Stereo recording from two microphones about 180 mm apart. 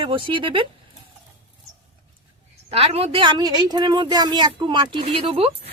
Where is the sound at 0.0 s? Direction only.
30° right (ahead or behind).